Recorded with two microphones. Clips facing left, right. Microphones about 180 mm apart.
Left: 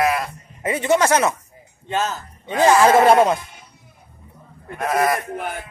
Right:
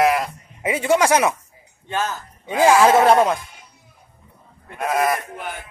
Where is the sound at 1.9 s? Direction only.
25° left (ahead or behind).